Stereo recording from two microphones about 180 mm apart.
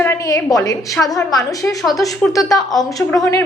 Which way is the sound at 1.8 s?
Centre (ahead or behind).